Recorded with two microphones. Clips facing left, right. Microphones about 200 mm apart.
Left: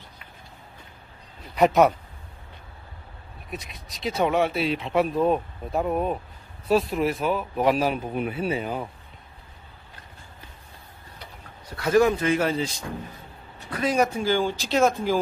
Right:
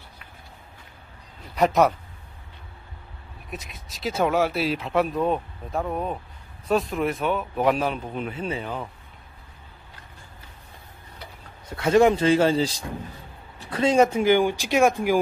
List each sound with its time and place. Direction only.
1.5 s speech: centre (ahead or behind)
3.4 s speech: centre (ahead or behind)
11.7 s speech: 25° right (ahead or behind)